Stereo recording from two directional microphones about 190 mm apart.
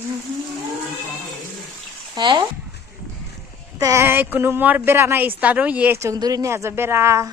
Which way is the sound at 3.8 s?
15° right (ahead or behind).